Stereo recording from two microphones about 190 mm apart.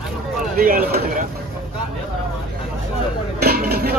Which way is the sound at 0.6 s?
50° right (ahead or behind).